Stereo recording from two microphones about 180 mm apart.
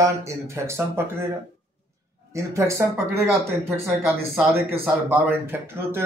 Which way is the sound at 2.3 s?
15° right (ahead or behind).